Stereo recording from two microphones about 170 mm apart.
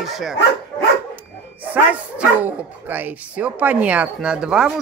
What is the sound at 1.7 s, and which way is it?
Speech, 10° right (ahead or behind).